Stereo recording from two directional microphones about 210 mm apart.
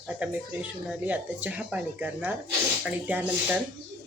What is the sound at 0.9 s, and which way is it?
Speech, 5° right (ahead or behind).